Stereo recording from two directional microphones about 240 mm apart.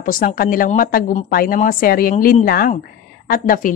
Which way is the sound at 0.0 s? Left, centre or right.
Left.